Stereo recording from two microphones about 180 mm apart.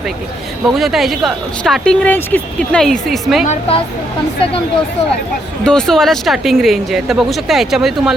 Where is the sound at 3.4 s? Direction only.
35° left (ahead or behind).